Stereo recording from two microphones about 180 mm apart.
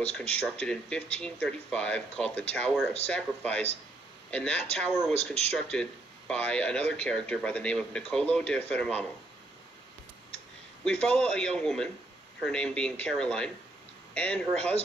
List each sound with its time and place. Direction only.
0.6 s speech: 5° left (ahead or behind)
5.1 s speech: 35° left (ahead or behind)
5.5 s speech: 5° left (ahead or behind)
10.8 s speech: 5° left (ahead or behind)